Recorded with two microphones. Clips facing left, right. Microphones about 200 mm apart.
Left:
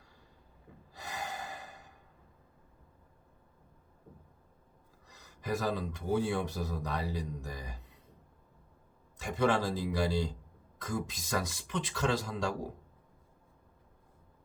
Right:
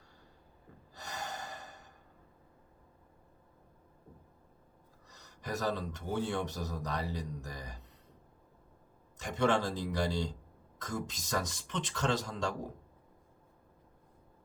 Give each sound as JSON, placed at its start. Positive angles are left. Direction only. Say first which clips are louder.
{"t": 0.9, "sound": "gasp", "louder": "left 2 dB", "side_deg": 10}
{"t": 5.1, "sound": "speech", "louder": "left 4 dB", "side_deg": 10}
{"t": 9.2, "sound": "speech", "louder": "left 1 dB", "side_deg": 10}